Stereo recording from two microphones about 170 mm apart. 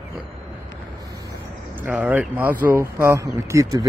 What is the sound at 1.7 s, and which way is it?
Speech, 10° right (ahead or behind).